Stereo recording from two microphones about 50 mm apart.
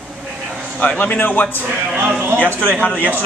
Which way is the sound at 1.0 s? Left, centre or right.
Left.